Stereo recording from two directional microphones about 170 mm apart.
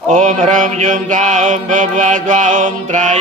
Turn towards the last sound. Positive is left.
turn(degrees=-45)  # may be behind; listen again after turning